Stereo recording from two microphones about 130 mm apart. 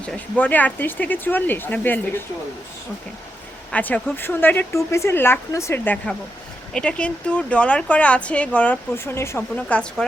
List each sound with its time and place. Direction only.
0.0 s speech: 10° left (ahead or behind)
3.7 s speech: 10° left (ahead or behind)